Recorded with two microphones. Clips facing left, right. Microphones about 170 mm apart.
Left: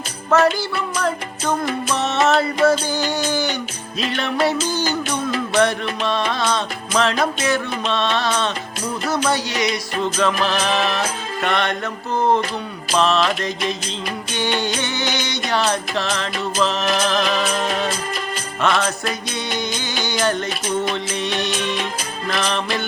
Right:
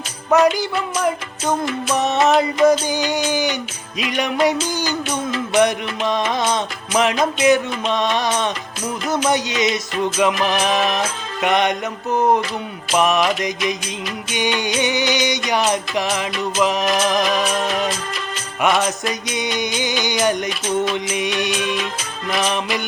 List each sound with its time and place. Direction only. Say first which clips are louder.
0.3 s music: right 2 dB; 15° right (ahead or behind)